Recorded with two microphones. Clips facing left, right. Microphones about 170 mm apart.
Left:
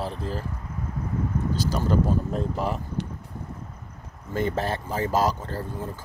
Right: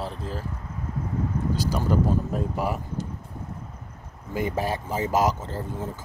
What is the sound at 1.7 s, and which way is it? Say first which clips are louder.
Speech: even; 10° right (ahead or behind).